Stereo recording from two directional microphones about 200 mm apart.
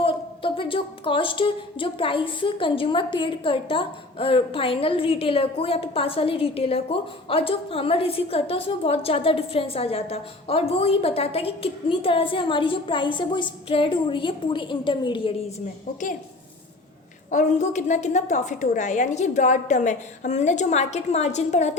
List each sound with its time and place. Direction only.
0.0 s a woman's voice: 25° left (ahead or behind)
17.3 s a woman's voice: 35° left (ahead or behind)